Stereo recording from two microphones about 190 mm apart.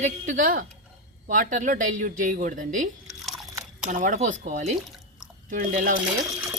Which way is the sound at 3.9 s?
40° right (ahead or behind).